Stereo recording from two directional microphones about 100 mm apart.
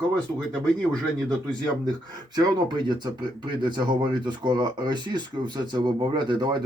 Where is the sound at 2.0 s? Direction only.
45° right (ahead or behind).